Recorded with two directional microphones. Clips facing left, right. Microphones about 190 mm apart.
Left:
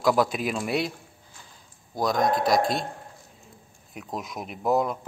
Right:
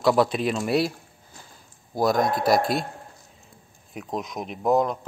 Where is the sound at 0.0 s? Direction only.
Centre (ahead or behind).